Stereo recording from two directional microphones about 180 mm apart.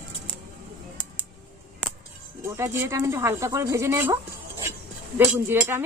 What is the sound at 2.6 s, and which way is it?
Speech, 15° right (ahead or behind).